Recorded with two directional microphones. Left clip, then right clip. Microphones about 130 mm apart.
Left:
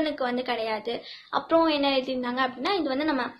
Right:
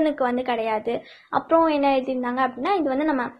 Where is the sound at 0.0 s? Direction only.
40° right (ahead or behind).